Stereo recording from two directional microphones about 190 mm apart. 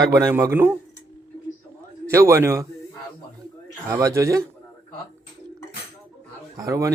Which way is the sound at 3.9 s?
15° right (ahead or behind).